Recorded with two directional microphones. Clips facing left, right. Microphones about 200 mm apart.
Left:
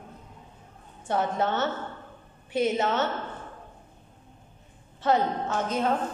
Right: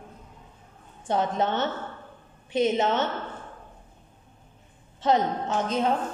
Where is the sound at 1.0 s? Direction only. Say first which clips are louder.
Right 1 dB; 20° right (ahead or behind).